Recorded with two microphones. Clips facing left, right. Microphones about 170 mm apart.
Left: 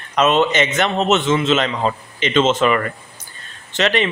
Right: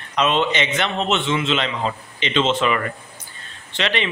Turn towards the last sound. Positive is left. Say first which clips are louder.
# left 5 dB
turn(degrees=45)  # may be behind; listen again after turning